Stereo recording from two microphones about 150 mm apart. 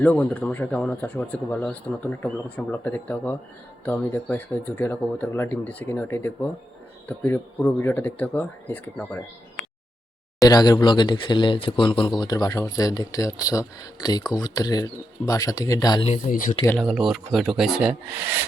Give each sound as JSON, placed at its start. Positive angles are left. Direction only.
{"t": 0.0, "sound": "speech", "side_deg": 10}
{"t": 10.4, "sound": "speech", "side_deg": 25}
{"t": 16.0, "sound": "speech", "side_deg": 60}
{"t": 16.7, "sound": "speech", "side_deg": 0}
{"t": 18.2, "sound": "wood", "side_deg": -15}